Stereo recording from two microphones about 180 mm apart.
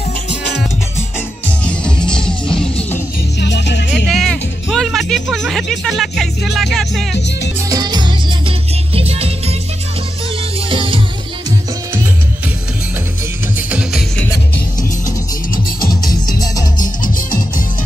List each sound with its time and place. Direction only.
1.6 s music: 5° left (ahead or behind)
3.3 s music: 75° left (ahead or behind)
3.9 s music: centre (ahead or behind)
7.2 s music: 70° left (ahead or behind)
7.7 s music: 25° right (ahead or behind)
10.7 s music: 30° right (ahead or behind)
13.6 s music: 5° right (ahead or behind)
15.5 s music: 55° left (ahead or behind)
16.0 s music: 20° left (ahead or behind)